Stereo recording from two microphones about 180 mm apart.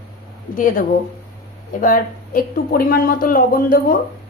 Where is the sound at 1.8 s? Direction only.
50° left (ahead or behind).